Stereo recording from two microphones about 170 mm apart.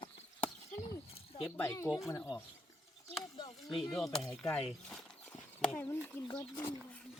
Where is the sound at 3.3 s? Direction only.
30° left (ahead or behind).